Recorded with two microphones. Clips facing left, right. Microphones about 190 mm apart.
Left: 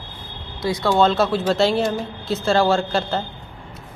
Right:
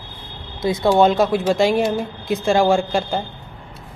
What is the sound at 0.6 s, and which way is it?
A woman's voice, 20° right (ahead or behind).